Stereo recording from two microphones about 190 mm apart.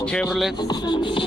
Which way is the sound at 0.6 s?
20° left (ahead or behind).